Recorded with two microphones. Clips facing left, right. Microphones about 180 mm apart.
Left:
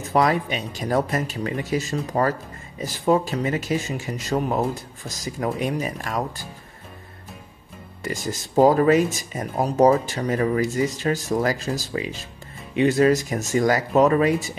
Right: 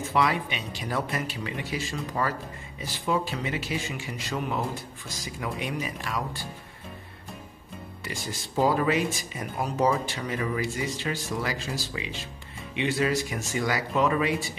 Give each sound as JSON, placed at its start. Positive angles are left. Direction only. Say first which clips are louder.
{"t": 0.0, "sound": "speech", "louder": "left 5 dB", "side_deg": 45}
{"t": 8.0, "sound": "speech", "louder": "left 8 dB", "side_deg": 45}